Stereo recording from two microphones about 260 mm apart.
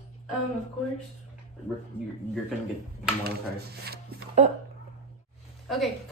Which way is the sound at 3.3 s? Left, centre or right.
Right.